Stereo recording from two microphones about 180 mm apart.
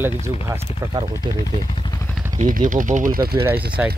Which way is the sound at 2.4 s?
45° right (ahead or behind).